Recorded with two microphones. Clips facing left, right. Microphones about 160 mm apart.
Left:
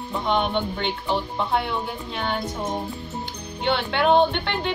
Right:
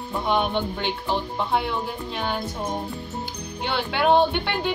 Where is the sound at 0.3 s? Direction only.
5° right (ahead or behind).